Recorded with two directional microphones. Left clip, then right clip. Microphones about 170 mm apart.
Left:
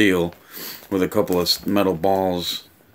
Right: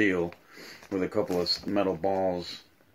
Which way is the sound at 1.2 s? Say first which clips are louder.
Left 8 dB; 45° left (ahead or behind).